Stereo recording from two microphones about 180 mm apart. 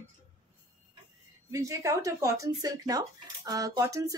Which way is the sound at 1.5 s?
15° right (ahead or behind).